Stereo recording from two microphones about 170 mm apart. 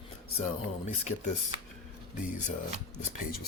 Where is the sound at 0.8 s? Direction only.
40° left (ahead or behind).